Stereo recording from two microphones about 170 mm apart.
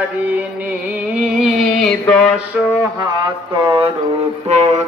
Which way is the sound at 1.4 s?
5° left (ahead or behind).